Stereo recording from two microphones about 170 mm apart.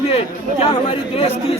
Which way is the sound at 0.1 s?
35° left (ahead or behind).